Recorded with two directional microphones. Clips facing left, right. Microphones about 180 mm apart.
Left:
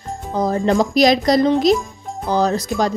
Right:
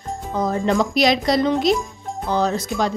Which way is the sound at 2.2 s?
35° left (ahead or behind).